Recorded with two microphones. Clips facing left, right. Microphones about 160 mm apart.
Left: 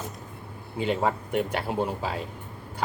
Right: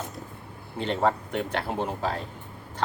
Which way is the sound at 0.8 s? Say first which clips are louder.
Right 1 dB; 10° left (ahead or behind).